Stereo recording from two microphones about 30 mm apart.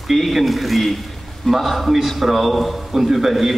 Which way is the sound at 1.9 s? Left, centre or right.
Centre.